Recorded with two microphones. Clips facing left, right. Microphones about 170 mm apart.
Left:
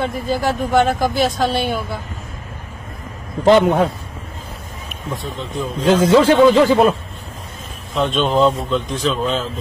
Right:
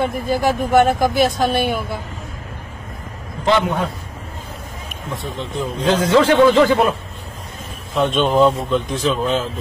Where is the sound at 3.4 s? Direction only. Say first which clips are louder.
Left 6 dB; 40° left (ahead or behind).